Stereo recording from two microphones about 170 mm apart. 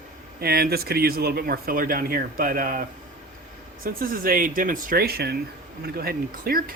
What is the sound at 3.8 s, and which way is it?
Speech, 55° right (ahead or behind).